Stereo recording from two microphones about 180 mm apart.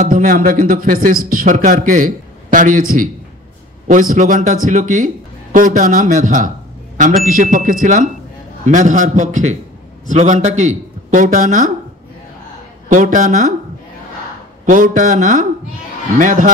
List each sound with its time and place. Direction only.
0.0 s speech: 45° right (ahead or behind)
12.9 s speech: 45° right (ahead or behind)
14.7 s speech: 45° right (ahead or behind)